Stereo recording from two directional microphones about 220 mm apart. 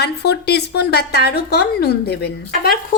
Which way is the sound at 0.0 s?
50° left (ahead or behind).